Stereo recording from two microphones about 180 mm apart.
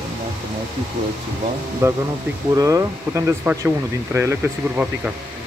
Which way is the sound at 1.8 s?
15° right (ahead or behind).